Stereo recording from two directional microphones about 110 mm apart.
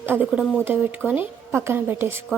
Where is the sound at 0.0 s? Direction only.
20° right (ahead or behind).